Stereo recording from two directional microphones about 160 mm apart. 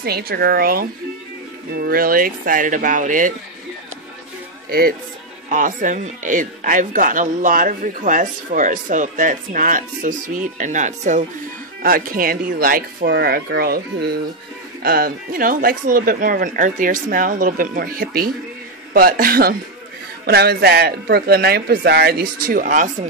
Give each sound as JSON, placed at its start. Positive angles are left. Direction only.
{"t": 0.0, "sound": "speech", "side_deg": -75}
{"t": 4.6, "sound": "speech", "side_deg": -70}
{"t": 5.5, "sound": "speech", "side_deg": -55}
{"t": 11.8, "sound": "speech", "side_deg": -65}
{"t": 20.2, "sound": "speech", "side_deg": -85}